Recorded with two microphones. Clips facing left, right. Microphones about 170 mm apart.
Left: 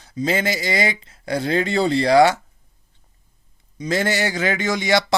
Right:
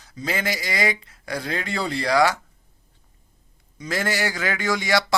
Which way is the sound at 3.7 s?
20° left (ahead or behind).